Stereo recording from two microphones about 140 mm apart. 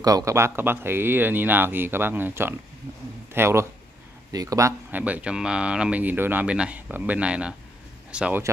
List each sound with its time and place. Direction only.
0.0 s speech: 25° right (ahead or behind)
5.0 s speech: 10° right (ahead or behind)